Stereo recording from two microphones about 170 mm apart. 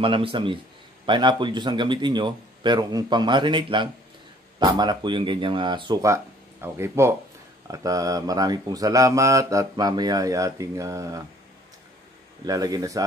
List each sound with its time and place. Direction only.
0.0 s speech: 30° right (ahead or behind)
12.4 s speech: 20° right (ahead or behind)